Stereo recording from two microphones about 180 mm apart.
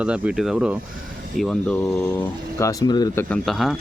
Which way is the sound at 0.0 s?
5° right (ahead or behind).